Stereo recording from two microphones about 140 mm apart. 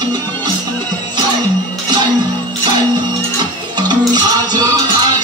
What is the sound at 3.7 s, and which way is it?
Music, 30° right (ahead or behind).